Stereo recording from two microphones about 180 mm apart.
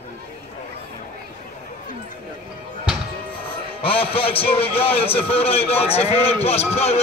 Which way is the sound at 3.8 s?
30° left (ahead or behind).